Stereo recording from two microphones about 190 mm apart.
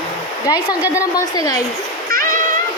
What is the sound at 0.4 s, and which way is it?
Speech, 20° left (ahead or behind).